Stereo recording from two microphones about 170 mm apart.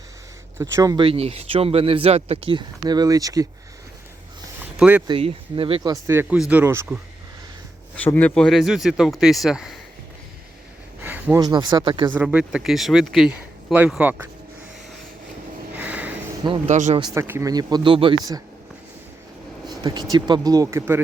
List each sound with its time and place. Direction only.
0.6 s speech: 20° right (ahead or behind)
1.0 s speech: 35° right (ahead or behind); by 3.4 s 20° right (ahead or behind)
4.6 s a sound: 10° right (ahead or behind)
5.0 s speech: 30° right (ahead or behind)
5.9 s speech: 15° right (ahead or behind)
7.9 s speech: 10° left (ahead or behind)
11.0 s a sound: 10° right (ahead or behind)
11.3 s speech: 25° right (ahead or behind)
12.1 s speech: 5° right (ahead or behind)
15.7 s a sound: 10° right (ahead or behind)
16.6 s speech: 45° right (ahead or behind)
17.0 s speech: 20° right (ahead or behind)
19.6 s speech: 25° right (ahead or behind)